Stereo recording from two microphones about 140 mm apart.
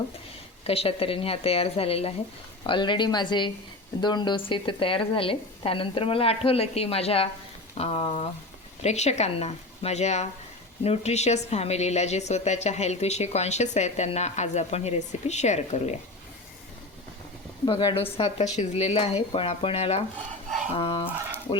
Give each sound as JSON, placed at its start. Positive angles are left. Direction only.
{"t": 0.7, "sound": "a woman's voice", "side_deg": 45}
{"t": 17.7, "sound": "a woman's voice", "side_deg": 35}